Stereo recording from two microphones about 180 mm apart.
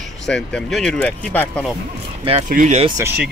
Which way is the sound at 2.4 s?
45° right (ahead or behind).